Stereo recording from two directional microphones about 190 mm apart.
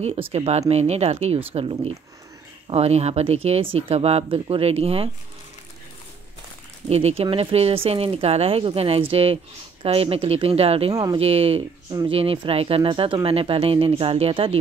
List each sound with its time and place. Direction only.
0.3 s speech: 35° right (ahead or behind)
6.9 s speech: 35° right (ahead or behind)